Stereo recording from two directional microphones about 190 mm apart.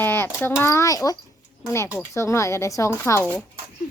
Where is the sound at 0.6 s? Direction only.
15° left (ahead or behind).